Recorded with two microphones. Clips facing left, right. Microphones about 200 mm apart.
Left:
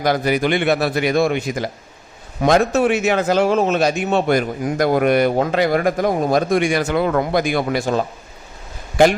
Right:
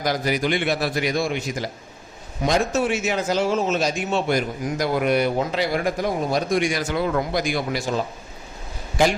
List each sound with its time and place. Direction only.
0.0 s a man's voice: 60° left (ahead or behind)